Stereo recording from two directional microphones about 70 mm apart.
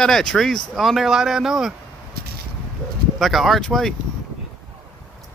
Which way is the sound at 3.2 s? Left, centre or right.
Centre.